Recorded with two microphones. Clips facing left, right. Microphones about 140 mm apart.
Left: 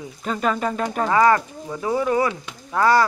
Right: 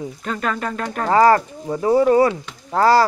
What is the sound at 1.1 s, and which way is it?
Speech, 35° right (ahead or behind).